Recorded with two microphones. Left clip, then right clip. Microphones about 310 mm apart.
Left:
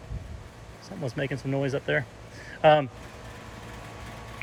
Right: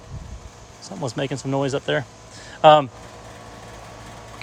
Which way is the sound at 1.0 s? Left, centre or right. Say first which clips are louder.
Right 5 dB; centre.